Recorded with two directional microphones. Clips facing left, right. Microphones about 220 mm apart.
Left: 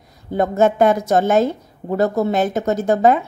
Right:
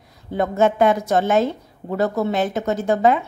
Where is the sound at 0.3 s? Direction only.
40° left (ahead or behind).